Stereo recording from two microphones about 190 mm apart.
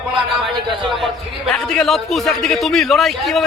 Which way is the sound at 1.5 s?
5° left (ahead or behind).